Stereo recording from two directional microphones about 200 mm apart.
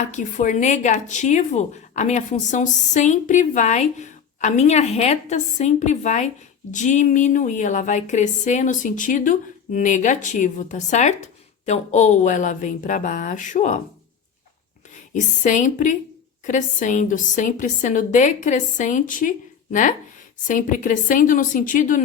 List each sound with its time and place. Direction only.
0.0 s speech: 40° left (ahead or behind)
14.9 s speech: 40° left (ahead or behind)
20.5 s speech: 40° left (ahead or behind)